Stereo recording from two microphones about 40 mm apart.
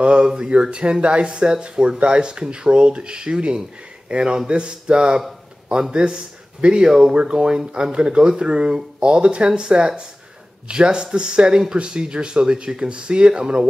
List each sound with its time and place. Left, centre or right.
0.0 s a sound: right
0.5 s a man's voice: right
6.9 s speech: centre